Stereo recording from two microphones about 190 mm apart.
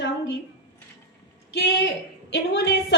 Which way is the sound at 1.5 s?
70° left (ahead or behind).